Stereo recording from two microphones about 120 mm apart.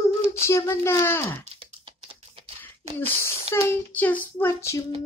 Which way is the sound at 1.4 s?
55° right (ahead or behind).